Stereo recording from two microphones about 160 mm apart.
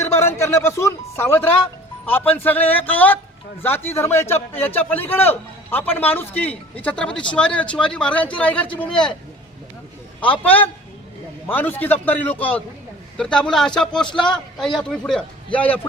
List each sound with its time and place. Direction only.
0.0 s music: 15° left (ahead or behind)
2.0 s a man's voice: 10° left (ahead or behind)
10.4 s a man's voice: 10° left (ahead or behind)